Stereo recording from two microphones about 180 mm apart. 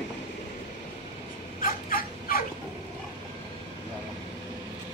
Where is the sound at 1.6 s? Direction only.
55° left (ahead or behind).